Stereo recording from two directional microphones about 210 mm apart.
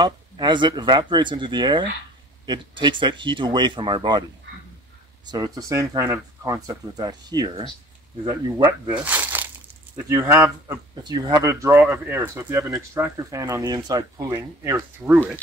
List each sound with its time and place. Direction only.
0.0 s speech: 20° right (ahead or behind)
5.2 s speech: 20° right (ahead or behind)
8.6 s speech: 10° right (ahead or behind)